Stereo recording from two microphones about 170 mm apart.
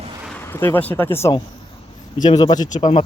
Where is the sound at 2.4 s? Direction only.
25° left (ahead or behind).